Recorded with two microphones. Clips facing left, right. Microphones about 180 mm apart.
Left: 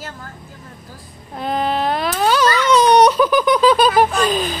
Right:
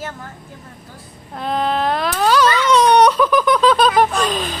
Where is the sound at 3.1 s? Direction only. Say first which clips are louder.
Left 1 dB; 5° left (ahead or behind).